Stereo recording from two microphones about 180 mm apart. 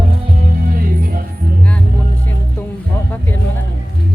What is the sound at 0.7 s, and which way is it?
Music, 55° right (ahead or behind).